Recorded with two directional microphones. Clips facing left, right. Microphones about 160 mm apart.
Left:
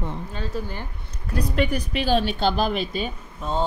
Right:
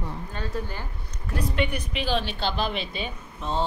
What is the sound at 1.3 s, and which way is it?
A woman's voice, 40° left (ahead or behind).